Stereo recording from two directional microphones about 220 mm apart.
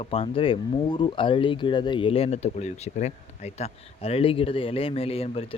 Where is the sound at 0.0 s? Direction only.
25° left (ahead or behind).